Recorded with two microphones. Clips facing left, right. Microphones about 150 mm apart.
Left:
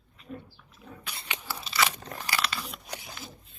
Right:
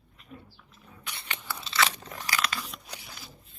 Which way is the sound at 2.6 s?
10° left (ahead or behind).